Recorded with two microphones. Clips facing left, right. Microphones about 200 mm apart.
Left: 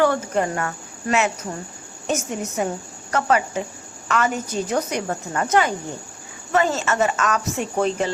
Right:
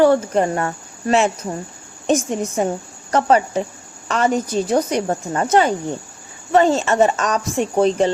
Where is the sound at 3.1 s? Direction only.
35° right (ahead or behind).